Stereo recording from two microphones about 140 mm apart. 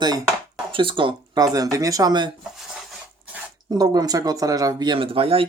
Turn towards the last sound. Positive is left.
turn(degrees=-45)  # may be behind; listen again after turning